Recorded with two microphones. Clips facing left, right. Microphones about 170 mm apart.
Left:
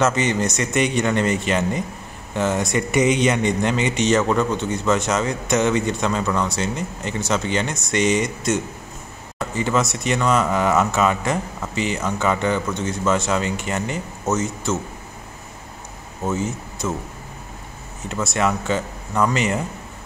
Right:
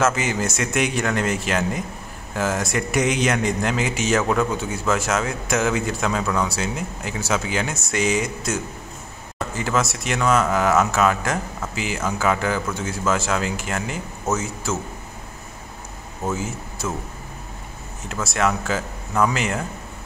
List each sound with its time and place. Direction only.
0.0 s a man's voice: 5° right (ahead or behind)
16.3 s speech: 5° right (ahead or behind)
18.0 s a man's voice: centre (ahead or behind)